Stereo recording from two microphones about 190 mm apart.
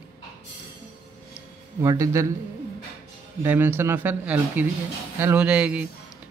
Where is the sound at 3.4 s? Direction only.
10° right (ahead or behind).